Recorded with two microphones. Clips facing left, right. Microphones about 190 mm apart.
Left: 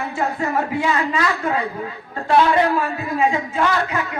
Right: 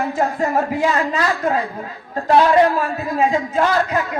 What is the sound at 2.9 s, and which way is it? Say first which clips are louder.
A woman's voice: right 2 dB; 40° right (ahead or behind).